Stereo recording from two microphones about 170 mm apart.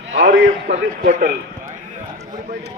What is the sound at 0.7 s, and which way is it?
Speech, 50° right (ahead or behind).